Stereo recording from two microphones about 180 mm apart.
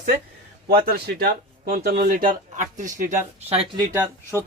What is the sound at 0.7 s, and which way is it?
Speech, 60° right (ahead or behind).